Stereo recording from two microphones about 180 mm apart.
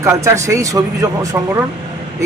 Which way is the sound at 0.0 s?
15° right (ahead or behind).